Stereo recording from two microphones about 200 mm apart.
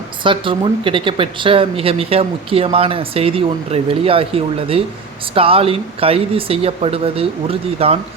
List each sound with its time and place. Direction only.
0.2 s speech: 25° right (ahead or behind)